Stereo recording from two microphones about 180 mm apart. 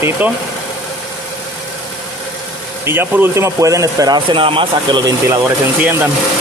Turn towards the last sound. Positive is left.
turn(degrees=-10)  # may be behind; listen again after turning